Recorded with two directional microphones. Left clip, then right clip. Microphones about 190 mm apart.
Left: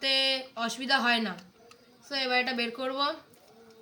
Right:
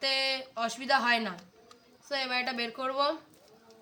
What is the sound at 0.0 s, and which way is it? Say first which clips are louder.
Speech: left 3 dB; 15° right (ahead or behind).